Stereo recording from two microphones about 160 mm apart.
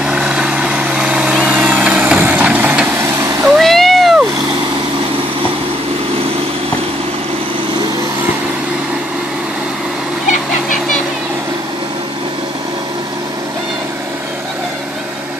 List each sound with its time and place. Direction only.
0.0 s vehicle: 5° right (ahead or behind)
3.5 s cat: centre (ahead or behind)